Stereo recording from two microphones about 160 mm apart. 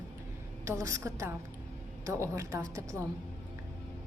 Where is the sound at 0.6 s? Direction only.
20° right (ahead or behind).